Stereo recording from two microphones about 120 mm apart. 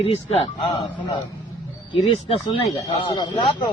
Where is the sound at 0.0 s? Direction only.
60° left (ahead or behind).